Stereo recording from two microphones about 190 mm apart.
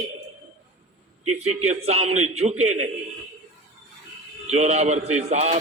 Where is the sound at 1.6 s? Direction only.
35° right (ahead or behind).